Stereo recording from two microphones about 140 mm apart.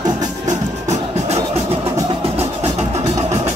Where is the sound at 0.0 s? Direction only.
60° right (ahead or behind).